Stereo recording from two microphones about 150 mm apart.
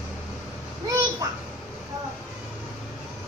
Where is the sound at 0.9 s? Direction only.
25° right (ahead or behind).